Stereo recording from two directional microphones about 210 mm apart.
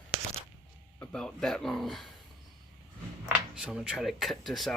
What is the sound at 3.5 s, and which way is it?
Speech, 5° right (ahead or behind).